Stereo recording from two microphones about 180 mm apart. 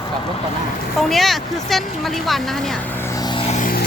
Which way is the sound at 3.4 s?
45° left (ahead or behind).